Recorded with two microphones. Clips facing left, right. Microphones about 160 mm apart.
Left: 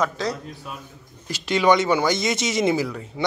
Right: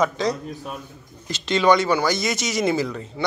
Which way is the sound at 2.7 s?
10° left (ahead or behind).